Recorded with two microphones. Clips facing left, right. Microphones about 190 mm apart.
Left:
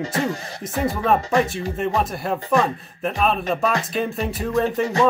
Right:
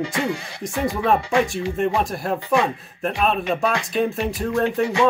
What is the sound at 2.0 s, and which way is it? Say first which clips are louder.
Speech: even; centre (ahead or behind).